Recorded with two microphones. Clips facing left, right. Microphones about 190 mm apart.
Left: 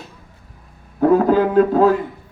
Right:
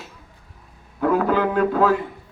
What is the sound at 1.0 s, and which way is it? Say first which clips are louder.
Speech: left 5 dB; 35° left (ahead or behind).